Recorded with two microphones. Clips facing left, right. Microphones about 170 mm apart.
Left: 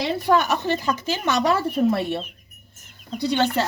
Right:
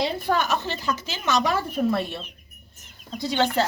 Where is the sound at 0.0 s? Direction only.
70° left (ahead or behind).